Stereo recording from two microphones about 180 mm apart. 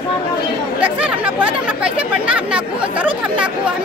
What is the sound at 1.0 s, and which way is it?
Speech, 5° right (ahead or behind).